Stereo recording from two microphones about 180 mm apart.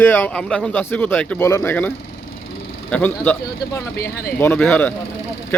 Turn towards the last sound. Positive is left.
turn(degrees=10)  # may be behind; listen again after turning